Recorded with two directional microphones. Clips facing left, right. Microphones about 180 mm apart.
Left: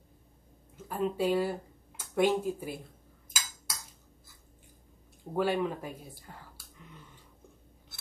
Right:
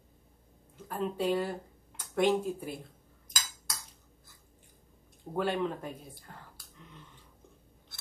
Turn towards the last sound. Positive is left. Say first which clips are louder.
# left 1 dB
turn(degrees=5)  # may be behind; listen again after turning